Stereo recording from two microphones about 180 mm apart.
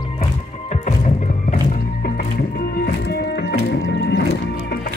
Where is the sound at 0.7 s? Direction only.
40° left (ahead or behind).